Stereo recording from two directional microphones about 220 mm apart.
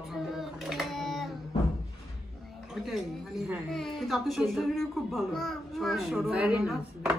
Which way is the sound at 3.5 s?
Centre (ahead or behind).